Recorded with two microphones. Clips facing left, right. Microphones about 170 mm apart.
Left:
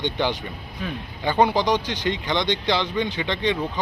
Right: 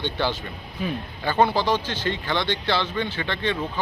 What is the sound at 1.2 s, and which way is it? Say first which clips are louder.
Speech: left 1 dB; 15° left (ahead or behind).